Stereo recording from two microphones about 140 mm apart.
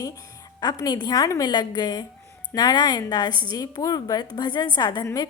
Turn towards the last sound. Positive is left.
turn(degrees=30)  # may be behind; listen again after turning